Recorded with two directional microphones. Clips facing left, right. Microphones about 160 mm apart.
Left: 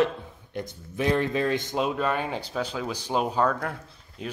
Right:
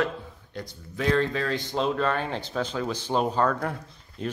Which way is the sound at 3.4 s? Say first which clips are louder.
Even; 5° right (ahead or behind).